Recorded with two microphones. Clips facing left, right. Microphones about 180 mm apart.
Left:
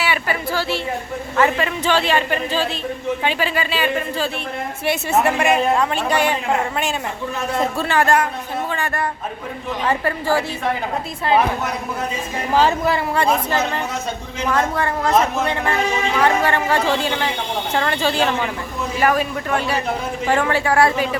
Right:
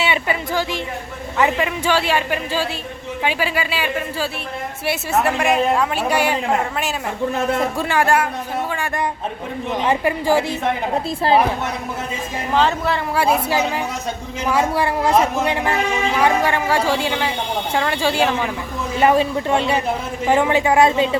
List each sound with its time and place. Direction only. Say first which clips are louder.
0.0 s a woman's voice: right 1 dB; 20° right (ahead or behind)
7.8 s a woman's voice: left 3 dB; 10° right (ahead or behind)
12.5 s speech: left 2 dB; 10° left (ahead or behind)
13.1 s a woman's voice: right 1 dB; 10° right (ahead or behind)
18.9 s speech: right 3 dB; 25° right (ahead or behind)